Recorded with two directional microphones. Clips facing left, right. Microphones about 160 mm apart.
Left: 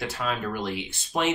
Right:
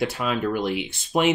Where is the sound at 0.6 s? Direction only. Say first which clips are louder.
Right 5 dB; 15° right (ahead or behind).